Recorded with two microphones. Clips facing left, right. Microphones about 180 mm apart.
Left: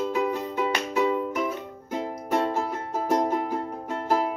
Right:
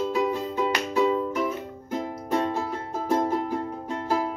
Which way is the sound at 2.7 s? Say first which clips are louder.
Left 1 dB; 20° left (ahead or behind).